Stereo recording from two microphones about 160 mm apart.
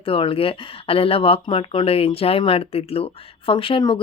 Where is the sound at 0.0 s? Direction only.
35° left (ahead or behind).